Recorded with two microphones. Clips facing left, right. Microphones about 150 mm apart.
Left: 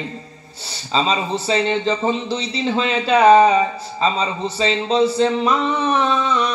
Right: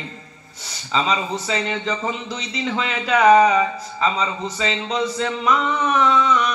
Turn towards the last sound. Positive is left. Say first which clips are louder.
# right 1 dB
turn(degrees=30)  # may be behind; listen again after turning